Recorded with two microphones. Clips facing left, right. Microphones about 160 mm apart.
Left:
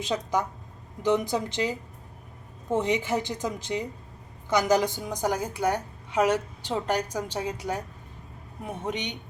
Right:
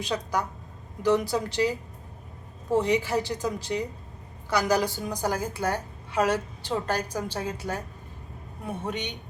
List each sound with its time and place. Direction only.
0.0 s a woman's voice: 20° left (ahead or behind)